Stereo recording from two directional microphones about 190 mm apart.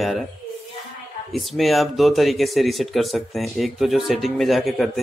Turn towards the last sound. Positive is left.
turn(degrees=0)  # may be behind; listen again after turning